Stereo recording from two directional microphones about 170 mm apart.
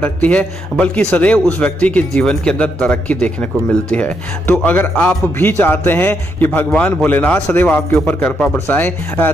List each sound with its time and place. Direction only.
0.0 s a man's voice: 10° left (ahead or behind)